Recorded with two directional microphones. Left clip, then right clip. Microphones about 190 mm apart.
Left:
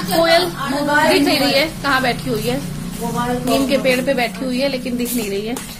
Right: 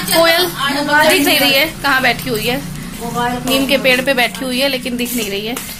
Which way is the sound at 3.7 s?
Centre (ahead or behind).